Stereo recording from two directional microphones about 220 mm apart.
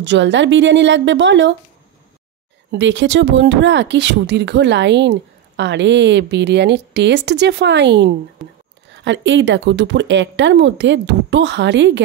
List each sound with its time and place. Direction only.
0.0 s speech: 55° right (ahead or behind)
2.7 s speech: 55° right (ahead or behind)